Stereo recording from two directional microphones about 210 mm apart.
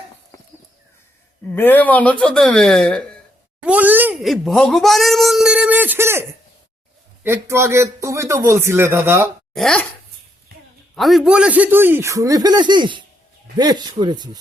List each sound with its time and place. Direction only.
1.5 s speech: 10° left (ahead or behind)
3.6 s speech: 5° right (ahead or behind)
7.3 s speech: 15° right (ahead or behind)
9.6 s speech: 5° left (ahead or behind)
10.9 s speech: centre (ahead or behind); by 14.3 s 20° right (ahead or behind)